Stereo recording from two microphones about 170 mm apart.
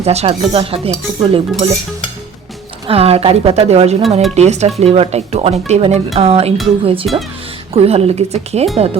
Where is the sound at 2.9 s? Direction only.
35° right (ahead or behind).